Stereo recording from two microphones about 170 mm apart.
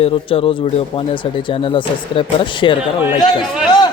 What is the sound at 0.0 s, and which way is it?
Speech, 35° left (ahead or behind).